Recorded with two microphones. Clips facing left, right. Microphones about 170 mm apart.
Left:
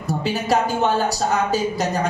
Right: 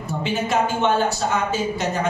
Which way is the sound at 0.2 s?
35° left (ahead or behind).